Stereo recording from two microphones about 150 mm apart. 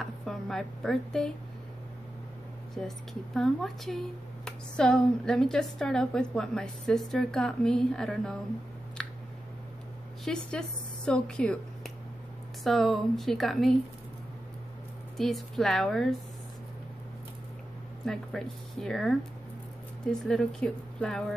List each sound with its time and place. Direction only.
0.0 s a woman's voice: centre (ahead or behind)
2.8 s a woman's voice: 5° left (ahead or behind)
9.0 s a sound: 5° left (ahead or behind)
10.2 s a woman's voice: 5° left (ahead or behind)
15.1 s a woman's voice: centre (ahead or behind)
18.0 s a woman's voice: 5° left (ahead or behind)